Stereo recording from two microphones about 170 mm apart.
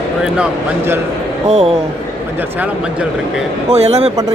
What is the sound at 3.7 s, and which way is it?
Speech, 40° right (ahead or behind).